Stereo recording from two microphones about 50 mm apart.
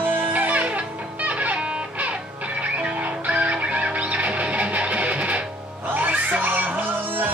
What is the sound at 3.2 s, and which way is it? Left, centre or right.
Music, right.